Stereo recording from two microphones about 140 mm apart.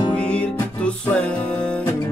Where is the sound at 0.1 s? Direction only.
10° left (ahead or behind).